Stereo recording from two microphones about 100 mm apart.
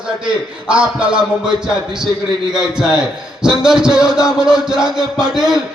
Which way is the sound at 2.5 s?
5° right (ahead or behind).